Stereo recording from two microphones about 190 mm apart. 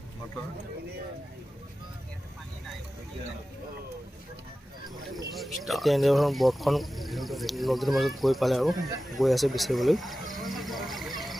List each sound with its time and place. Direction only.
5.3 s speech: centre (ahead or behind)